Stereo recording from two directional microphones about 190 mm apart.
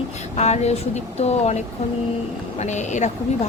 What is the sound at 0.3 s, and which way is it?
Speech, 35° left (ahead or behind).